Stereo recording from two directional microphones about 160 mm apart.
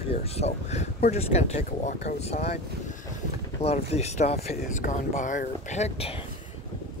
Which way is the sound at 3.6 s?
40° left (ahead or behind).